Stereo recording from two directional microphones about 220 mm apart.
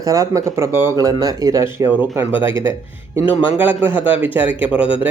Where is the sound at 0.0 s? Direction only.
15° right (ahead or behind).